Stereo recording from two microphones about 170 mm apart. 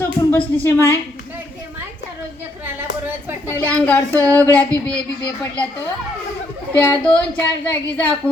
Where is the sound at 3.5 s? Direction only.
10° left (ahead or behind).